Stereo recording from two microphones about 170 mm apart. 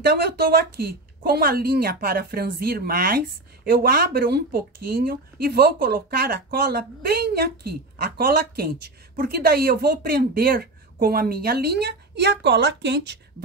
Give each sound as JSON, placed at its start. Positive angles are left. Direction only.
{"t": 0.0, "sound": "speech", "side_deg": -70}